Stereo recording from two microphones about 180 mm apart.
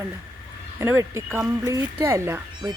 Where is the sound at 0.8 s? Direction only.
15° right (ahead or behind).